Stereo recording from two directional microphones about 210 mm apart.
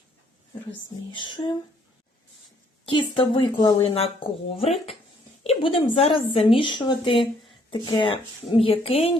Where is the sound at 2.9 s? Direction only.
25° left (ahead or behind).